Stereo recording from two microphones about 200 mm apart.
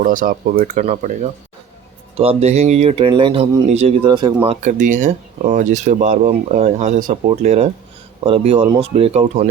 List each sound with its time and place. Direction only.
0.0 s speech: 40° right (ahead or behind); by 4.4 s 20° right (ahead or behind)
4.4 s speech: 40° right (ahead or behind)